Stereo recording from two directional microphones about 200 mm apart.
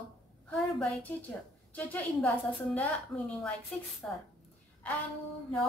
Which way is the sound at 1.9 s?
5° left (ahead or behind).